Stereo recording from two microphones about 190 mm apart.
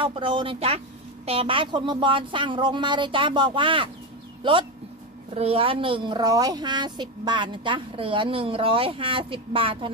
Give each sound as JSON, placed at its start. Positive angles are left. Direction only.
{"t": 0.0, "sound": "a woman's voice", "side_deg": -25}